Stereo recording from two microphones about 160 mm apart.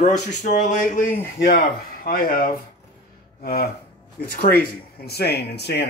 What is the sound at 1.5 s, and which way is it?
Speech, 65° left (ahead or behind).